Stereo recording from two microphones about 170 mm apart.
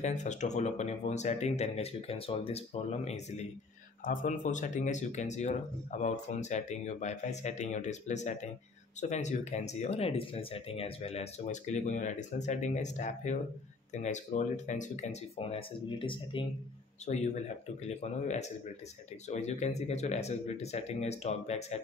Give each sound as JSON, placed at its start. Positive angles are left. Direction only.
{"t": 0.0, "sound": "speech", "side_deg": 45}
{"t": 4.0, "sound": "speech", "side_deg": 50}
{"t": 17.0, "sound": "speech", "side_deg": 40}